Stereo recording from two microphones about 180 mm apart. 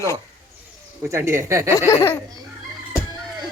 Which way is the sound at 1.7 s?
15° left (ahead or behind).